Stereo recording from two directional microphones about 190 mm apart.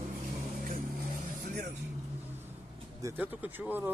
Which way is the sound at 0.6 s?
45° right (ahead or behind).